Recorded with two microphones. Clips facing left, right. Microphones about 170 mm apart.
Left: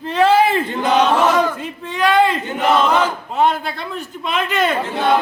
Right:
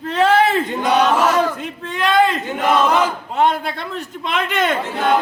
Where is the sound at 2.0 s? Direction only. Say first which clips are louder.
Left 1 dB; 10° left (ahead or behind).